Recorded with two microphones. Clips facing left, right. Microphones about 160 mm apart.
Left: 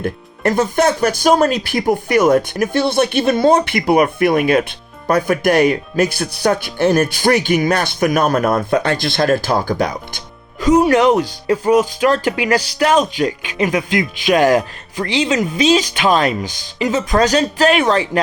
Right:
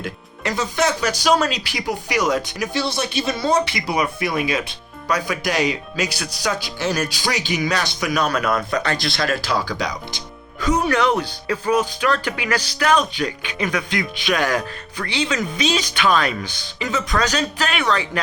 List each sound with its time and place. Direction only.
0.0 s speech: 55° left (ahead or behind)
10.7 s speech: 25° left (ahead or behind)
11.8 s speech: 35° left (ahead or behind)